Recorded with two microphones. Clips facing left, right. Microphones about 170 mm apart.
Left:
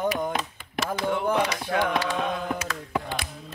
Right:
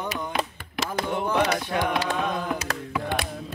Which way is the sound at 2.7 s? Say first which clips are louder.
Right 2 dB; 60° right (ahead or behind).